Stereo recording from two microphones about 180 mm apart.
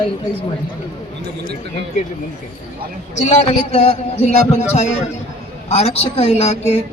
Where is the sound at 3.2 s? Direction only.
40° left (ahead or behind).